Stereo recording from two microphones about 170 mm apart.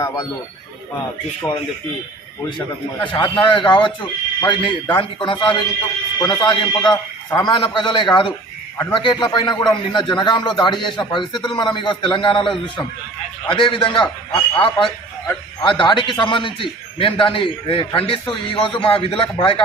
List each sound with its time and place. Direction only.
1.4 s speech: 10° left (ahead or behind)
3.1 s a man's voice: 25° left (ahead or behind)